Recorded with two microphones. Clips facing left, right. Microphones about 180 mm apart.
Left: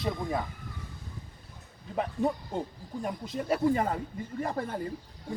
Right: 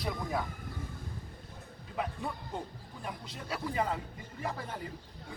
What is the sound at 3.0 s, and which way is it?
Speech, 50° left (ahead or behind).